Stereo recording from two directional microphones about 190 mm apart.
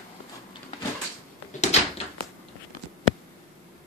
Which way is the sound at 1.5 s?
40° left (ahead or behind).